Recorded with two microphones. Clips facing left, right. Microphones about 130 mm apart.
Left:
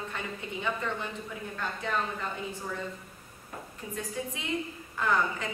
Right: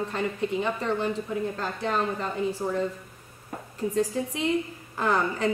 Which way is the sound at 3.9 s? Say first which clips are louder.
Right 9 dB; 35° right (ahead or behind).